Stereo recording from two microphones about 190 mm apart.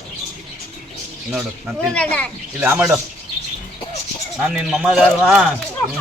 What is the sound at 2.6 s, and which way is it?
Speech, 5° right (ahead or behind).